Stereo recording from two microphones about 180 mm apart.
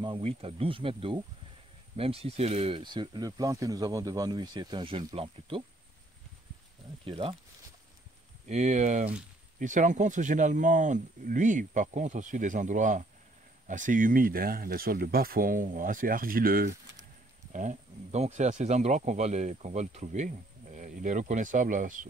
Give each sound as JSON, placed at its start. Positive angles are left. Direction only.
{"t": 0.0, "sound": "speech", "side_deg": -30}
{"t": 7.1, "sound": "speech", "side_deg": -30}
{"t": 8.5, "sound": "speech", "side_deg": -40}
{"t": 17.5, "sound": "speech", "side_deg": -45}